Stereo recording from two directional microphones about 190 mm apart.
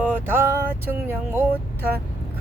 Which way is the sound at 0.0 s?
10° right (ahead or behind).